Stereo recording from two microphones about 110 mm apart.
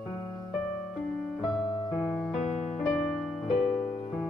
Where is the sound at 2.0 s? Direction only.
25° left (ahead or behind).